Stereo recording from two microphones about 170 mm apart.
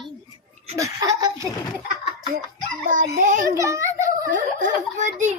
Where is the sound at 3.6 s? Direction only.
15° right (ahead or behind).